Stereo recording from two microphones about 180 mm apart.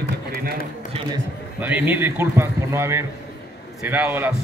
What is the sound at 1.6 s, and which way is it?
Speech, 10° right (ahead or behind).